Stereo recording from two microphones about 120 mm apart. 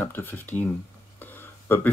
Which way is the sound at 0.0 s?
15° left (ahead or behind).